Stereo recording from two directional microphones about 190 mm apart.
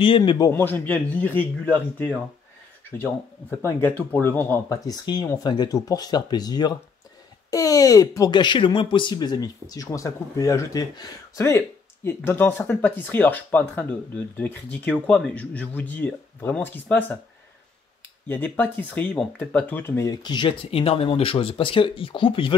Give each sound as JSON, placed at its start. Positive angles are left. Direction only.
{"t": 0.0, "sound": "speech", "side_deg": 25}
{"t": 0.5, "sound": "speech", "side_deg": 10}
{"t": 18.3, "sound": "speech", "side_deg": 10}